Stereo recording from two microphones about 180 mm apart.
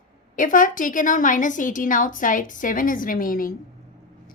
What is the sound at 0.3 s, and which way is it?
A woman's voice, 50° left (ahead or behind).